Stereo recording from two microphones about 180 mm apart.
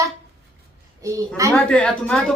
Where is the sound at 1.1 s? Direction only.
15° right (ahead or behind).